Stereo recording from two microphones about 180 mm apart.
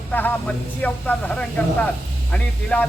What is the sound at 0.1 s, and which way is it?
Speech, 10° left (ahead or behind).